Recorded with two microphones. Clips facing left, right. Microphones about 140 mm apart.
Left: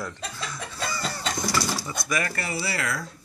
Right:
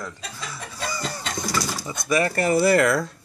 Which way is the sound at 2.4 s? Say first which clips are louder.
Right 12 dB; 50° right (ahead or behind).